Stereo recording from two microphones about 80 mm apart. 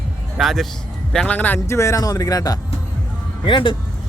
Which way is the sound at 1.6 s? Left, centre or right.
Left.